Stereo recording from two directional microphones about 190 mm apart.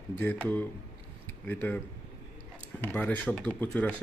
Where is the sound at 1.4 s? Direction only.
10° left (ahead or behind).